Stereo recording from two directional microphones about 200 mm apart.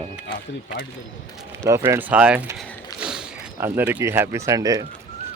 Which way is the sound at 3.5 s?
10° right (ahead or behind).